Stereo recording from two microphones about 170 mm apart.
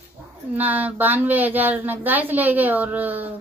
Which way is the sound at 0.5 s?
10° right (ahead or behind).